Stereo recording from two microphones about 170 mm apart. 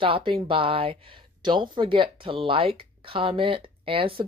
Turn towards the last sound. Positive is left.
turn(degrees=-30)  # may be behind; listen again after turning